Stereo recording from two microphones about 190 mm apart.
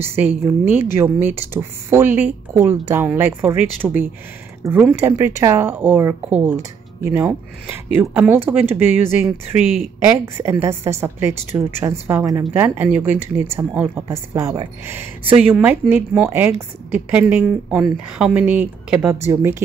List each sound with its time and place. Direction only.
0.0 s speech: 10° right (ahead or behind)